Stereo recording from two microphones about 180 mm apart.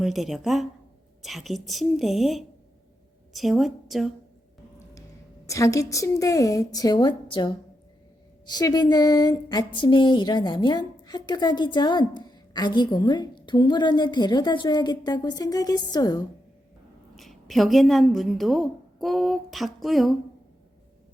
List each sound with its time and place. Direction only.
0.0 s a woman's voice: centre (ahead or behind)
5.5 s speech: 15° left (ahead or behind)
17.2 s a woman's voice: centre (ahead or behind)